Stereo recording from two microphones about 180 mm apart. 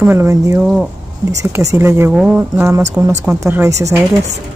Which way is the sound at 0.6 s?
5° right (ahead or behind).